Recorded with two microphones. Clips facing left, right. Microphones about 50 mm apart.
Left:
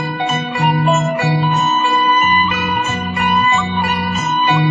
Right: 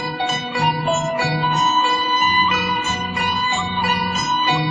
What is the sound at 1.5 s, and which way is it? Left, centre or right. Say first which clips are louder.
Music: left 2 dB; centre.